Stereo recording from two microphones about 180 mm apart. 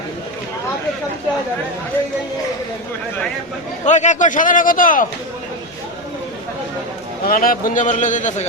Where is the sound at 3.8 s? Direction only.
40° left (ahead or behind).